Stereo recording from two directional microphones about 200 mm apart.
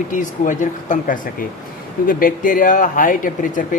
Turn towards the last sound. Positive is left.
turn(degrees=40)  # may be behind; listen again after turning